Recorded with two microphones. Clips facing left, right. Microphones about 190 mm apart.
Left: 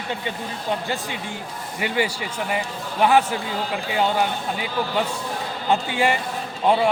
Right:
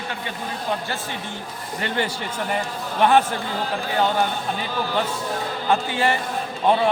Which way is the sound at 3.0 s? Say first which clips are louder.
Even; 5° left (ahead or behind).